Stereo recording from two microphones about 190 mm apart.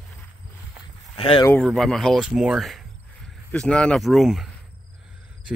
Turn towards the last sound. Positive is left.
turn(degrees=0)  # may be behind; listen again after turning